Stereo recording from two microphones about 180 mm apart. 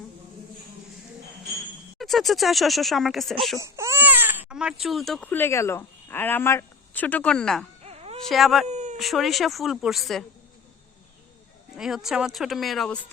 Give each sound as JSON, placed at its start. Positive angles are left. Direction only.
{"t": 2.0, "sound": "speech", "side_deg": 0}
{"t": 3.6, "sound": "speech", "side_deg": -15}
{"t": 7.9, "sound": "dog", "side_deg": -35}
{"t": 8.2, "sound": "speech", "side_deg": 0}
{"t": 8.6, "sound": "a sound", "side_deg": -40}
{"t": 9.0, "sound": "speech", "side_deg": 0}
{"t": 11.8, "sound": "speech", "side_deg": 0}